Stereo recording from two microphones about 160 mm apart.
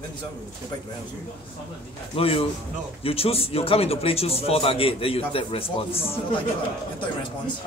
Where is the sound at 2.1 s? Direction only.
35° left (ahead or behind).